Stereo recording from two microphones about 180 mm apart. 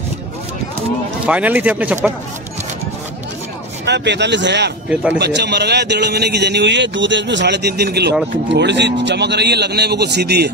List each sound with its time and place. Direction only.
1.2 s speech: 10° right (ahead or behind)
3.8 s a man's voice: 70° right (ahead or behind)